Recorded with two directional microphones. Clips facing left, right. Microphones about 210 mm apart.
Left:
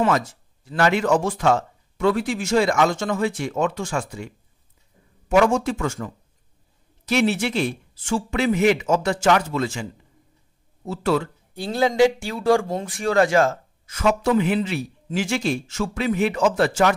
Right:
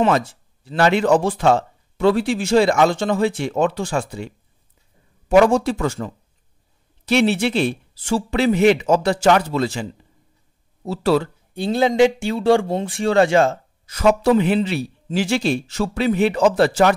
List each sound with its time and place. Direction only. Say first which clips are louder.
0.3 s speech: right 3 dB; 30° right (ahead or behind)
5.3 s speech: right 4 dB; 35° right (ahead or behind)
10.9 s speech: right 4 dB; 35° right (ahead or behind)
11.5 s speech: right 3 dB; 25° right (ahead or behind)